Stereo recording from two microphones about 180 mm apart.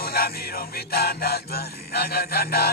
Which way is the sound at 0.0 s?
60° left (ahead or behind).